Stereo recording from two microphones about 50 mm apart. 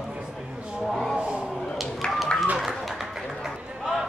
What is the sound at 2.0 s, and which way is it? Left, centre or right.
Run, centre.